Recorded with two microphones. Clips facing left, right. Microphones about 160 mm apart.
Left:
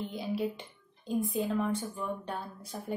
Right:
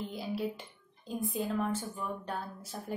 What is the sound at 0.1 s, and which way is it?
Speech, centre (ahead or behind).